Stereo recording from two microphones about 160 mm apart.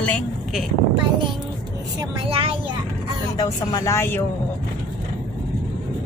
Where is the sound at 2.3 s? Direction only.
35° right (ahead or behind).